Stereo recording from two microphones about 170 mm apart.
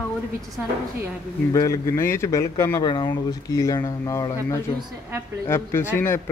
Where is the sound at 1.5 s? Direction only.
20° left (ahead or behind).